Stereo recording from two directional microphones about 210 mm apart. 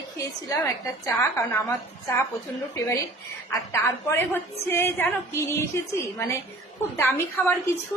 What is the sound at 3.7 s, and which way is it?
A woman's voice, 10° left (ahead or behind).